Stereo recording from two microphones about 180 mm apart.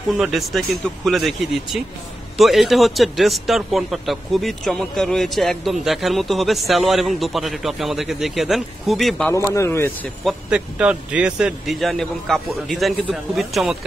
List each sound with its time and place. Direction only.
0.2 s a man's voice: centre (ahead or behind)
9.5 s speech: 15° left (ahead or behind)
10.2 s a man's voice: 5° right (ahead or behind)